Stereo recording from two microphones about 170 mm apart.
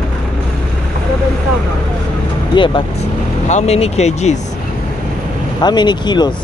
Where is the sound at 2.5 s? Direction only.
30° left (ahead or behind).